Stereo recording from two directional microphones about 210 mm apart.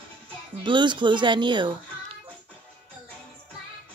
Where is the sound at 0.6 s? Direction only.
20° right (ahead or behind).